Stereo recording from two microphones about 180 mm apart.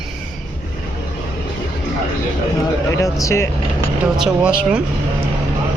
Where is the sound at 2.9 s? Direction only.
15° left (ahead or behind).